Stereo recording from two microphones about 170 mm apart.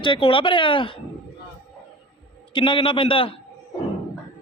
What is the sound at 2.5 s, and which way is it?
Speech, 30° left (ahead or behind).